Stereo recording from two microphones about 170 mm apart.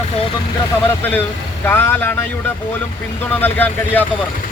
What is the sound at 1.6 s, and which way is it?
Speech, 15° left (ahead or behind).